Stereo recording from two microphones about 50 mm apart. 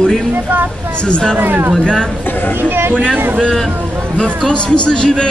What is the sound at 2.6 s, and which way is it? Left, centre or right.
Speech, right.